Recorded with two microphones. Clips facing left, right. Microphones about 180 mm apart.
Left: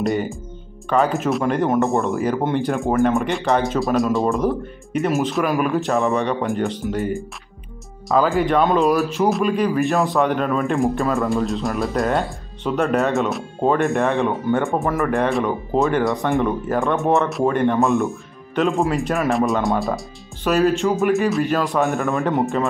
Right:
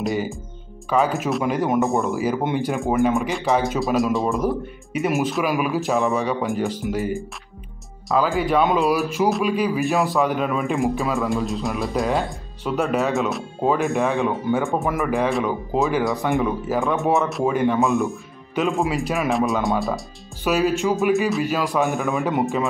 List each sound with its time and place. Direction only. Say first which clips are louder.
0.0 s speech: left 3 dB; centre (ahead or behind)
2.7 s speech: left 1 dB; centre (ahead or behind)